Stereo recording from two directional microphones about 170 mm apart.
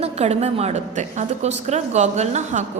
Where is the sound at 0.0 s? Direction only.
40° right (ahead or behind).